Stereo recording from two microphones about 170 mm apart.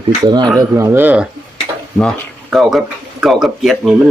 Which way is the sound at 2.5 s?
Centre (ahead or behind).